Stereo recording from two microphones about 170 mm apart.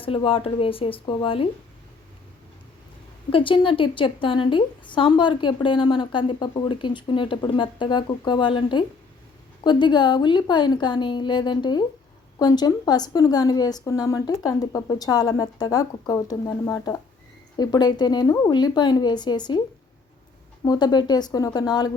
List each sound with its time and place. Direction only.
0.0 s speech: 30° left (ahead or behind)
3.2 s a woman's voice: 30° left (ahead or behind)
20.7 s a woman's voice: 25° left (ahead or behind)